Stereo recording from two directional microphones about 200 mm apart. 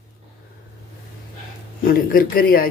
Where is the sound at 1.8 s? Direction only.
45° left (ahead or behind).